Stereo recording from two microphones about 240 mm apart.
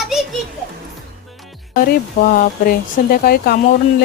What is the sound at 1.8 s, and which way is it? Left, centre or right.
Speech, left.